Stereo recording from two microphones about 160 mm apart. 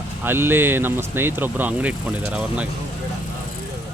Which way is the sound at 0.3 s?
15° right (ahead or behind).